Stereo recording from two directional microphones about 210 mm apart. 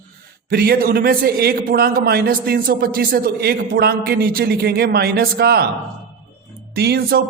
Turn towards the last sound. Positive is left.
turn(degrees=-45)  # may be behind; listen again after turning